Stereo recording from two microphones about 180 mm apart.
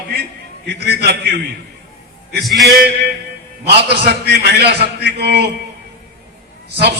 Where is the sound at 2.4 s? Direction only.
Centre (ahead or behind).